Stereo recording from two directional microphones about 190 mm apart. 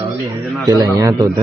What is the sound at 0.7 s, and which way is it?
Speech, 15° right (ahead or behind).